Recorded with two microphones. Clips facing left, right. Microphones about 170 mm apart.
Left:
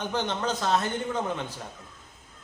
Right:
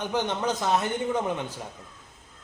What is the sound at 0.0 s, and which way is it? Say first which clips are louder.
A man's voice: right 2 dB; 15° right (ahead or behind).